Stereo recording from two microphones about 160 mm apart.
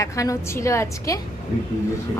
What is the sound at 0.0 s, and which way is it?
A woman's voice, 20° left (ahead or behind).